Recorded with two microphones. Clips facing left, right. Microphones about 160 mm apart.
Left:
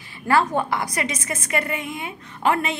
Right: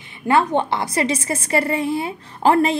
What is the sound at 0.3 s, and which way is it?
A woman's voice, 20° right (ahead or behind).